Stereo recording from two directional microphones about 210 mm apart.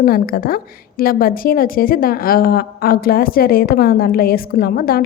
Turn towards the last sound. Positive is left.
turn(degrees=45)  # may be behind; listen again after turning